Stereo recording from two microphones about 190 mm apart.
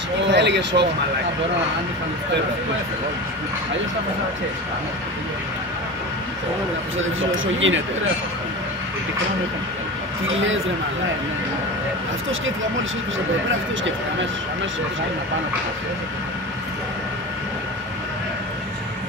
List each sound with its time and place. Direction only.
0.3 s speech: 65° right (ahead or behind)
7.0 s speech: 90° right